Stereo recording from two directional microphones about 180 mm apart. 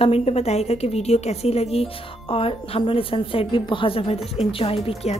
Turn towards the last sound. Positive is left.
turn(degrees=35)  # may be behind; listen again after turning